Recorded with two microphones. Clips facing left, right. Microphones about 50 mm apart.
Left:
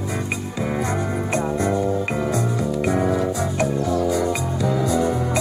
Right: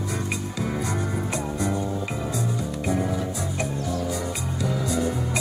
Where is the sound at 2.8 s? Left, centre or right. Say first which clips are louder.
Left 5 dB; left.